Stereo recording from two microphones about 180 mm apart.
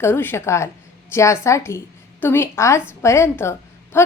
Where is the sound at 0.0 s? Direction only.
10° left (ahead or behind).